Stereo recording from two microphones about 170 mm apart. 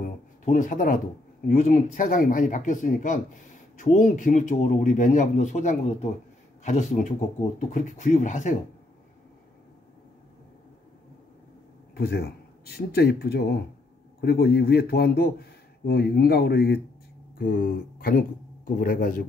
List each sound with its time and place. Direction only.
0.0 s a sound: 50° left (ahead or behind)
1.6 s speech: 50° left (ahead or behind)
11.9 s a man's voice: 65° left (ahead or behind)